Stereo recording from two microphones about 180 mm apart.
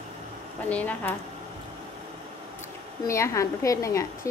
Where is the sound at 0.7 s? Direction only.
10° left (ahead or behind).